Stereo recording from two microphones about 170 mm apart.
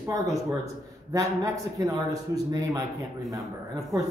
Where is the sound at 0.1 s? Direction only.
20° right (ahead or behind).